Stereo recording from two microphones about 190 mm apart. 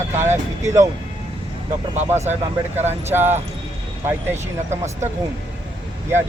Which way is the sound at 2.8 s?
35° right (ahead or behind).